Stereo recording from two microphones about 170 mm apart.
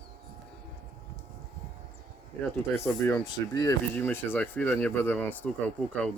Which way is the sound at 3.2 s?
25° left (ahead or behind).